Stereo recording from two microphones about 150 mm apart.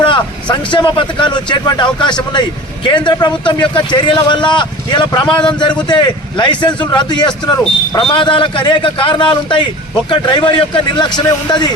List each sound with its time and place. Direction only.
0.0 s a man's voice: 30° left (ahead or behind)